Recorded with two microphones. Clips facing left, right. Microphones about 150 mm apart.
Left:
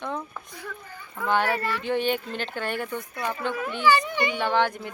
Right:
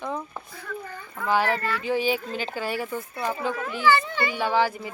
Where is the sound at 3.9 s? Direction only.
15° left (ahead or behind).